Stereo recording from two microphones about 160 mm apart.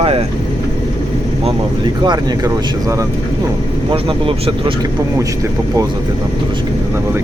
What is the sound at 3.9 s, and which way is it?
Speech, 35° right (ahead or behind).